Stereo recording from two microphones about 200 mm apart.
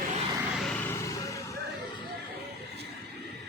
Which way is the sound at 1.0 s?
15° left (ahead or behind).